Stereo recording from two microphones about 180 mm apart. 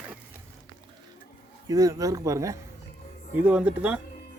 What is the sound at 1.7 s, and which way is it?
A man's voice, 20° right (ahead or behind).